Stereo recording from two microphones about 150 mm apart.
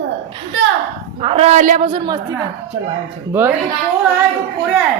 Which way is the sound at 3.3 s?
15° right (ahead or behind).